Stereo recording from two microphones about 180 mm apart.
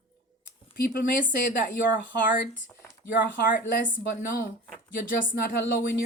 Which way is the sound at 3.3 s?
50° left (ahead or behind).